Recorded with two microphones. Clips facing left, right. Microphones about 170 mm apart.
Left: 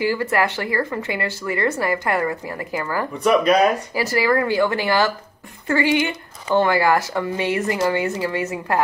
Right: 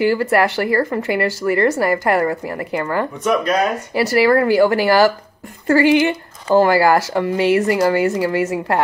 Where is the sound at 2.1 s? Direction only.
35° right (ahead or behind).